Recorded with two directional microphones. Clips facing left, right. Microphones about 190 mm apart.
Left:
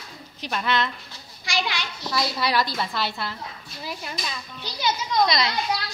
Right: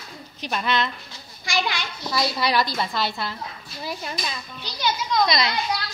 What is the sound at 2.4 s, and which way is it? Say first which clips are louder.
Speech: right 1 dB; 15° right (ahead or behind).